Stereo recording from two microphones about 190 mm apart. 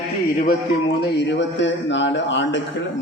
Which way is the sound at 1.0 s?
65° left (ahead or behind).